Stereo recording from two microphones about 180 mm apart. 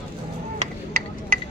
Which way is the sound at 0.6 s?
50° right (ahead or behind).